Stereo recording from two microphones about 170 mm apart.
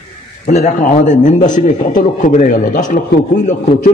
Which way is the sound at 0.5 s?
45° left (ahead or behind).